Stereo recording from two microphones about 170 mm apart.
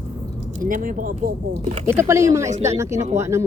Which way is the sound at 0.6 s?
50° right (ahead or behind).